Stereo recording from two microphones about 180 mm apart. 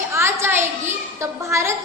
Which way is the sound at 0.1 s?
15° right (ahead or behind).